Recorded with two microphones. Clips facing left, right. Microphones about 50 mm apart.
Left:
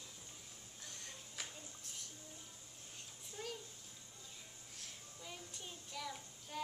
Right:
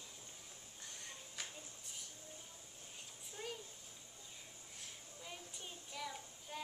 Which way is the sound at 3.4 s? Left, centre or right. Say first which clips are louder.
Even; centre.